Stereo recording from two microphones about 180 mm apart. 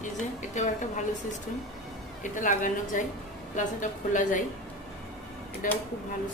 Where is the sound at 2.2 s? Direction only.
45° left (ahead or behind).